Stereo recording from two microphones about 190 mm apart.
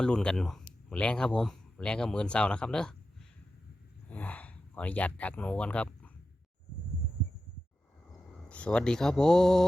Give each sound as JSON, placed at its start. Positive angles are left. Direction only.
{"t": 0.0, "sound": "speech", "side_deg": 5}
{"t": 4.1, "sound": "speech", "side_deg": 10}
{"t": 8.4, "sound": "speech", "side_deg": 5}